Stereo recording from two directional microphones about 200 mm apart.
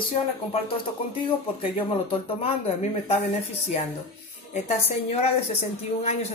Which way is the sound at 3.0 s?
30° left (ahead or behind).